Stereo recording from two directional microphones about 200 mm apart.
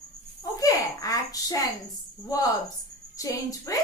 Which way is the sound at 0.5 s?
15° left (ahead or behind).